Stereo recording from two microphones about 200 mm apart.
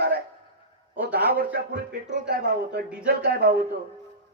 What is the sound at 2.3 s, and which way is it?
Speech, 55° right (ahead or behind).